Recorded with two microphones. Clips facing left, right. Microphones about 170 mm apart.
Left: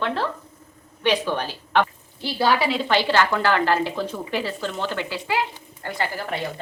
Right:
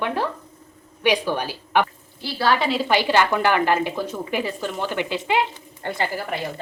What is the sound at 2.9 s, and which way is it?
Speech, 15° right (ahead or behind).